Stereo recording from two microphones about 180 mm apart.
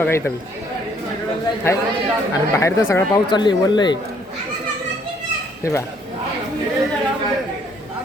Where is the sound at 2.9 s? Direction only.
20° left (ahead or behind).